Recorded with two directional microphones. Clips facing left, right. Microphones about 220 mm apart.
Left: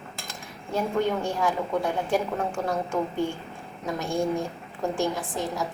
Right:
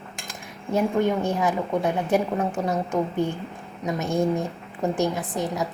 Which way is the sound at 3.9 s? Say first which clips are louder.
Right 3 dB; 20° right (ahead or behind).